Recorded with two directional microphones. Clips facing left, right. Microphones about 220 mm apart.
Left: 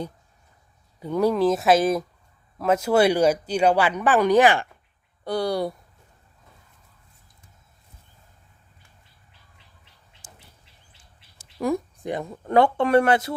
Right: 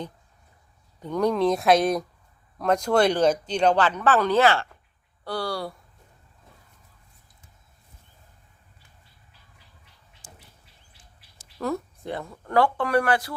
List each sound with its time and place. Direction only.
0.9 s speech: 10° left (ahead or behind)
11.6 s speech: 15° left (ahead or behind)